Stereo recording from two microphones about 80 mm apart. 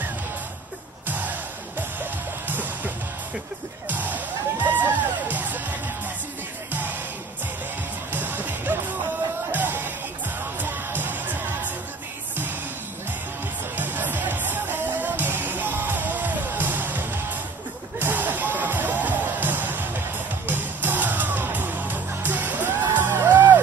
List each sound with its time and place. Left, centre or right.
1.0 s music: right
3.9 s music: right
6.7 s music: right
8.1 s music: right
13.7 s music: right